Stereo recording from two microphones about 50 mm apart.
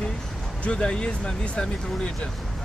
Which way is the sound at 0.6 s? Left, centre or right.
Left.